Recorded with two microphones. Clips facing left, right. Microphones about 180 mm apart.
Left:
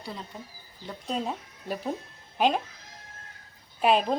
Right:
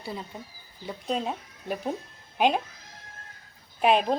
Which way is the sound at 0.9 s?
5° right (ahead or behind).